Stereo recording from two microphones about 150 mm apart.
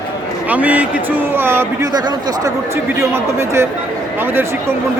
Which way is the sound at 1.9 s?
25° right (ahead or behind).